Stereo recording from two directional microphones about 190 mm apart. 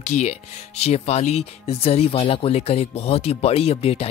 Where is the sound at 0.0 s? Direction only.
35° left (ahead or behind).